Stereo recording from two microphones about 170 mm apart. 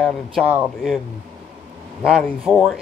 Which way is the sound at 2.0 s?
Centre (ahead or behind).